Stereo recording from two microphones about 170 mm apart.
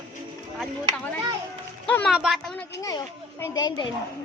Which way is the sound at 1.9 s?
10° left (ahead or behind).